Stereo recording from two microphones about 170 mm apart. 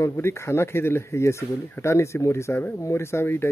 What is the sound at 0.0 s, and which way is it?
Speech, 15° left (ahead or behind).